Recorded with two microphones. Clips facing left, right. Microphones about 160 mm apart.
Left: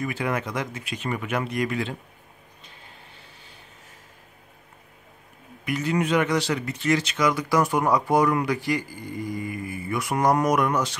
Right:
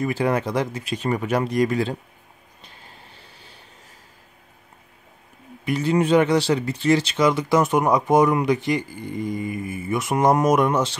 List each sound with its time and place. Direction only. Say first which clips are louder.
0.0 s speech: right 5 dB; 35° right (ahead or behind)
5.7 s speech: right 5 dB; 30° right (ahead or behind)